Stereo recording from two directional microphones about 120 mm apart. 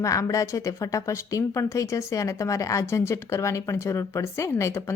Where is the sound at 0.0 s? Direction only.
25° left (ahead or behind).